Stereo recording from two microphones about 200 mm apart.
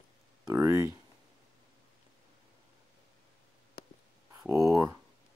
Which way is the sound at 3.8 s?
50° left (ahead or behind).